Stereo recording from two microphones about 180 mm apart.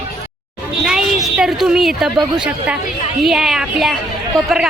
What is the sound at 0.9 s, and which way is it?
Speech, 5° right (ahead or behind).